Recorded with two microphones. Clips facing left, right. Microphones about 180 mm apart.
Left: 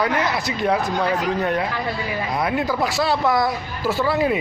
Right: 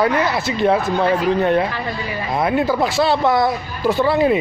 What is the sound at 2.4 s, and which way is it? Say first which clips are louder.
Speech: right 5 dB; 30° right (ahead or behind).